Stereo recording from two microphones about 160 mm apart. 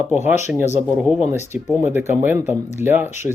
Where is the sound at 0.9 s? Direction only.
5° right (ahead or behind).